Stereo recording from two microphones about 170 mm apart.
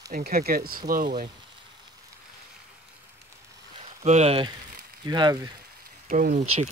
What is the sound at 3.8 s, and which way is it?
Speech, 40° right (ahead or behind).